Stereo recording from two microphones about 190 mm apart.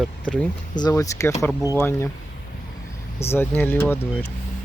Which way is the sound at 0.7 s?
20° left (ahead or behind).